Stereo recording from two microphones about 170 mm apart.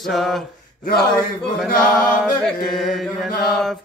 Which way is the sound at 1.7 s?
5° left (ahead or behind).